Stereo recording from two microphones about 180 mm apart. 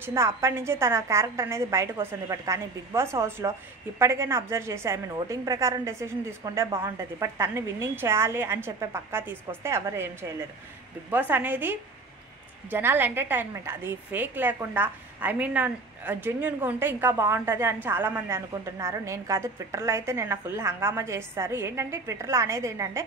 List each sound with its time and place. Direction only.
0.0 s a woman's voice: 15° right (ahead or behind)